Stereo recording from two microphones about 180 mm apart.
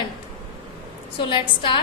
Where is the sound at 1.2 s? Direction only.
25° left (ahead or behind).